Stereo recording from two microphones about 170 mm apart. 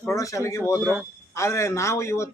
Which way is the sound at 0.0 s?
20° left (ahead or behind).